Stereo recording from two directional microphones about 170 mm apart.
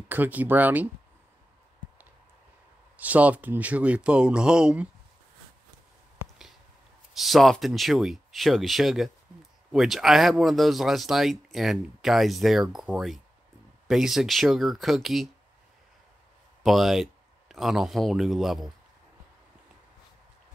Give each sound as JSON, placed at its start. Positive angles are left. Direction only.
{"t": 0.1, "sound": "speech", "side_deg": -10}
{"t": 3.0, "sound": "speech", "side_deg": -10}
{"t": 7.2, "sound": "speech", "side_deg": 0}
{"t": 16.6, "sound": "speech", "side_deg": 0}